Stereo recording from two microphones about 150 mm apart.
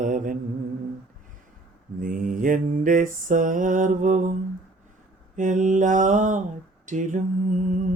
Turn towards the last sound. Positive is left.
turn(degrees=-60)  # may be behind; listen again after turning